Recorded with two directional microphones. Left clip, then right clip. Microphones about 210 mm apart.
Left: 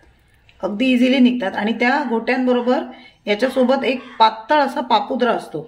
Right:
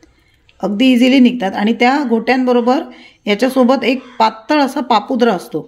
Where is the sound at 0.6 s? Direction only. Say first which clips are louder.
Right 5 dB; 40° right (ahead or behind).